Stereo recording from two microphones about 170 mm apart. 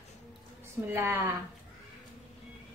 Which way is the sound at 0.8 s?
15° right (ahead or behind).